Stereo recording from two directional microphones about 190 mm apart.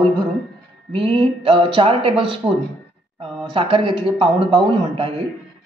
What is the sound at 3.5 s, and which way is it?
Speech, 25° right (ahead or behind).